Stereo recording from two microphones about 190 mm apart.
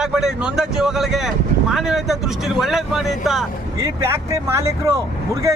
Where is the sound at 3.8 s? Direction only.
15° right (ahead or behind).